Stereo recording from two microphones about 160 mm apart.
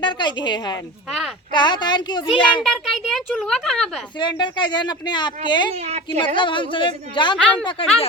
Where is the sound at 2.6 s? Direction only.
Centre (ahead or behind).